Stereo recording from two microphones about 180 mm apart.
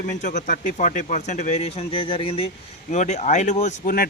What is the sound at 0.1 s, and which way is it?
Speech, 45° left (ahead or behind).